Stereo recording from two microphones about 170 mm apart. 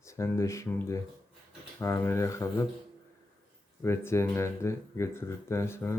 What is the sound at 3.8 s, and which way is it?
Speech, 15° left (ahead or behind).